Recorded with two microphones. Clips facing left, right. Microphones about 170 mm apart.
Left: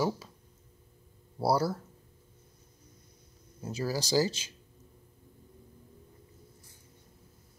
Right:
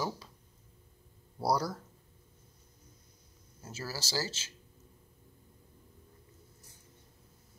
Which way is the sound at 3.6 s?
15° left (ahead or behind).